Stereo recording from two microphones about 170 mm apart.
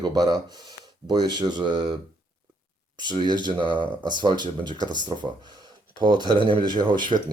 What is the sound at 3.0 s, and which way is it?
Speech, 25° right (ahead or behind).